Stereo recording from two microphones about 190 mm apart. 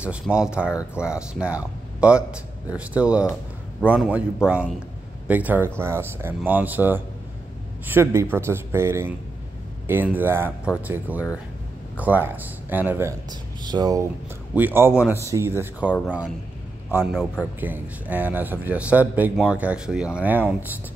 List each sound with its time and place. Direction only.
0.0 s a man's voice: 5° right (ahead or behind)
13.3 s speech: 20° right (ahead or behind)
14.5 s a man's voice: 10° right (ahead or behind)
17.0 s a man's voice: 5° left (ahead or behind)
17.6 s a man's voice: 10° right (ahead or behind)